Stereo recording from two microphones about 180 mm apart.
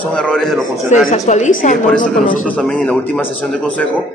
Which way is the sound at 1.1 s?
40° left (ahead or behind).